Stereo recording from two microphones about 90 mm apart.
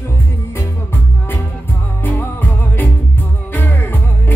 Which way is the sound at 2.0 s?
20° left (ahead or behind).